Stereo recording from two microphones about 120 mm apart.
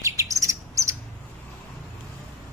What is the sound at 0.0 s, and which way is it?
Chirp, 25° right (ahead or behind).